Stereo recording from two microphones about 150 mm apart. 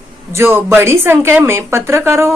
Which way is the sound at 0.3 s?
15° right (ahead or behind).